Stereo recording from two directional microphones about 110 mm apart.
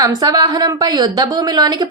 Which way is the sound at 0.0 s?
35° right (ahead or behind).